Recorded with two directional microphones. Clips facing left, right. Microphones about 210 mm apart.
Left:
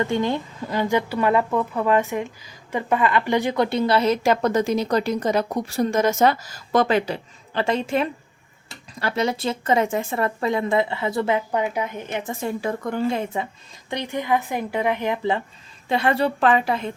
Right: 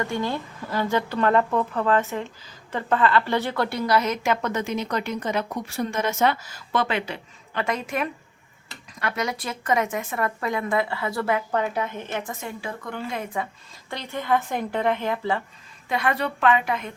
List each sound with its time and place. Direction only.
0.0 s a woman's voice: 20° left (ahead or behind)
12.4 s a woman's voice: 40° left (ahead or behind)
13.1 s a woman's voice: 25° left (ahead or behind)
15.9 s a woman's voice: 30° left (ahead or behind)